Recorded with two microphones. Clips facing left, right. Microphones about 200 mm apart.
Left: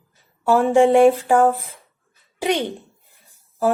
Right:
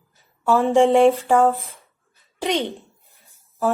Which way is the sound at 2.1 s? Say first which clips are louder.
Left 3 dB; 15° left (ahead or behind).